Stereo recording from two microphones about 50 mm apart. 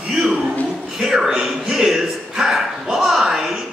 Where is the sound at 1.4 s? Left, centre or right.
Centre.